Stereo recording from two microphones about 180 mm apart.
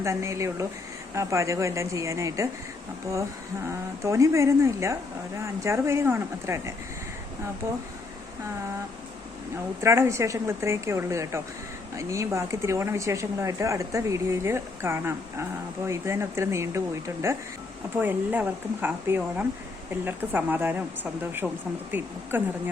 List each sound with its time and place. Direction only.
0.0 s speech: 15° right (ahead or behind)
3.7 s speech: 15° right (ahead or behind)
9.8 s speech: 15° right (ahead or behind)